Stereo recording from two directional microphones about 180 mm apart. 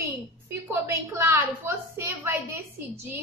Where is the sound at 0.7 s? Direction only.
15° right (ahead or behind).